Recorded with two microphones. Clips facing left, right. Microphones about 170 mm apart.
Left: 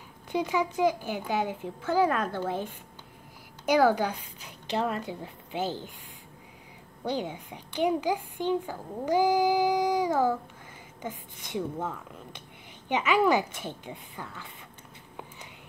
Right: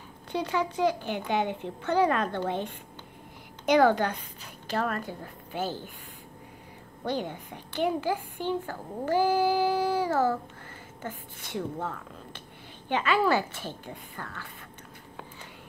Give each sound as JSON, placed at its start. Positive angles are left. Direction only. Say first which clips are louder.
{"t": 0.3, "sound": "a woman's voice", "louder": "left 1 dB", "side_deg": 10}
{"t": 7.1, "sound": "a woman's voice", "louder": "even", "side_deg": 10}
{"t": 9.0, "sound": "child singing", "louder": "left 1 dB", "side_deg": 15}
{"t": 11.0, "sound": "a woman's voice", "louder": "left 1 dB", "side_deg": 15}